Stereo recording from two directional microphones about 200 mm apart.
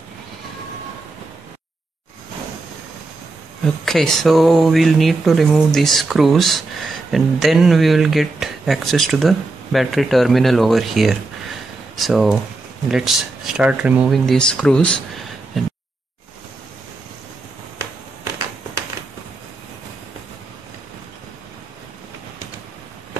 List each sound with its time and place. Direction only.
3.6 s speech: centre (ahead or behind)